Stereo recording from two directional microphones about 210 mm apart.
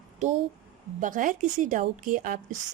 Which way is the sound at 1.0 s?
40° right (ahead or behind).